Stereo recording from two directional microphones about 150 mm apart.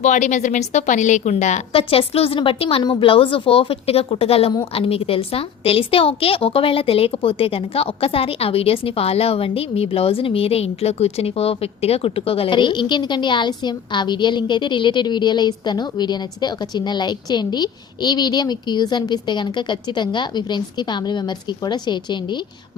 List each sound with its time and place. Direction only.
0.0 s a woman's voice: 50° left (ahead or behind); by 22.4 s 30° left (ahead or behind)